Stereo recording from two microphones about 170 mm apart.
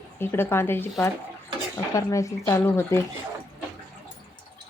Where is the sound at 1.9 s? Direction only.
20° left (ahead or behind).